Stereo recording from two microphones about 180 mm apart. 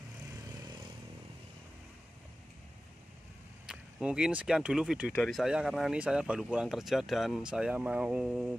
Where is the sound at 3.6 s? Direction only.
5° right (ahead or behind).